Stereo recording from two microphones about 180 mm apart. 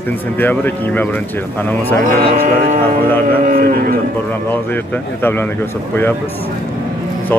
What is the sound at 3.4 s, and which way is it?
Speech, 55° right (ahead or behind).